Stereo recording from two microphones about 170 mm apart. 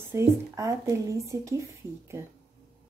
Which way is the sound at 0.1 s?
15° right (ahead or behind).